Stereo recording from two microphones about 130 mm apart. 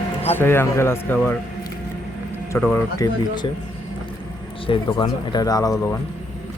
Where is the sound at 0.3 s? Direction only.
15° left (ahead or behind).